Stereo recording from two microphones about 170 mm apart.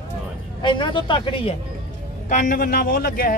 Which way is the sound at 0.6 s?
25° left (ahead or behind).